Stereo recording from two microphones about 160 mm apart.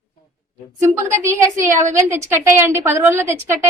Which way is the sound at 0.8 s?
15° right (ahead or behind).